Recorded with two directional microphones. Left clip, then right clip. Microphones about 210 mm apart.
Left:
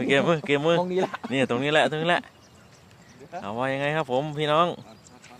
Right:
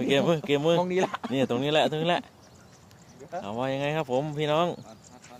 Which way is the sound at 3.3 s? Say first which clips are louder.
Left 2 dB; 5° left (ahead or behind).